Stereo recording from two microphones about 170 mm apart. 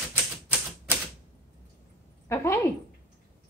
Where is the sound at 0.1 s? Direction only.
10° right (ahead or behind).